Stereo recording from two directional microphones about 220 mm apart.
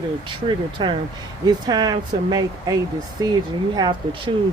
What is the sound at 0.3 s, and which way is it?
Speech, 20° right (ahead or behind).